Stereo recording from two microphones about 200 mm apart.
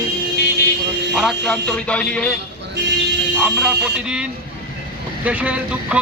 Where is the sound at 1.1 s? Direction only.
Centre (ahead or behind).